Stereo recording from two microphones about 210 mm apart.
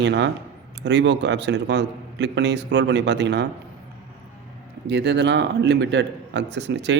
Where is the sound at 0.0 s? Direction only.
55° right (ahead or behind).